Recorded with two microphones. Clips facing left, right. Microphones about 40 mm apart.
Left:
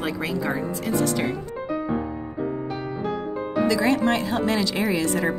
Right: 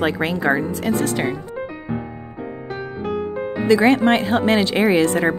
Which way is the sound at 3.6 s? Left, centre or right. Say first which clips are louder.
Right 7 dB; right.